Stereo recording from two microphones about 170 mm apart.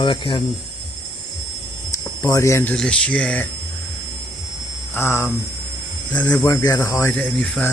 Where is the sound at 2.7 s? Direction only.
5° left (ahead or behind).